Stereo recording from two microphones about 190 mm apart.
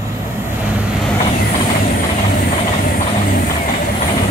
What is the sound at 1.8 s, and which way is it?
Vehicle, 50° left (ahead or behind).